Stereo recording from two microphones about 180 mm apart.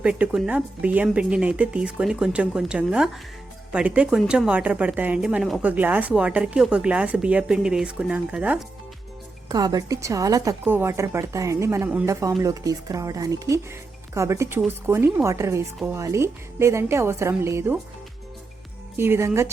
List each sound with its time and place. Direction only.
0.0 s a woman's voice: 5° right (ahead or behind)
9.5 s a woman's voice: 20° right (ahead or behind)
18.9 s a woman's voice: 15° right (ahead or behind)